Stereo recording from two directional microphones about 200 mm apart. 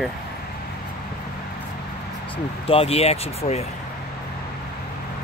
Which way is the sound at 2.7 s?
30° left (ahead or behind).